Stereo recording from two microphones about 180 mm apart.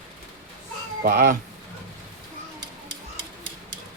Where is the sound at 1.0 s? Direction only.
50° right (ahead or behind).